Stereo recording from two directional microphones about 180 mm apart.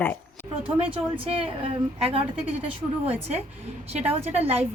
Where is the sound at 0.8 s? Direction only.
30° right (ahead or behind).